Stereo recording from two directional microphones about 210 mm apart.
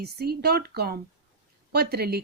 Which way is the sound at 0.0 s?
50° right (ahead or behind).